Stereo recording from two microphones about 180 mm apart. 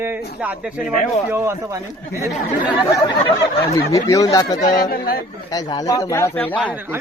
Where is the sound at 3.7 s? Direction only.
20° left (ahead or behind).